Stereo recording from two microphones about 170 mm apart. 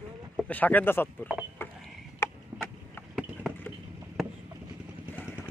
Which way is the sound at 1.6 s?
15° left (ahead or behind).